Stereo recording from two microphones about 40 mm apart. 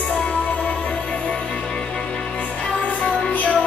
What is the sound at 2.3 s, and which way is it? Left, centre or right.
Music, left.